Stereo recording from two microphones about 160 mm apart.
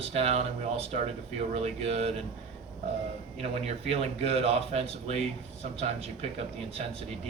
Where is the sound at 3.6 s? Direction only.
40° right (ahead or behind).